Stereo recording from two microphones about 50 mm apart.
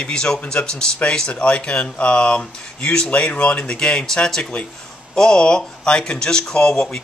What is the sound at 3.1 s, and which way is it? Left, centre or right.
Speech, left.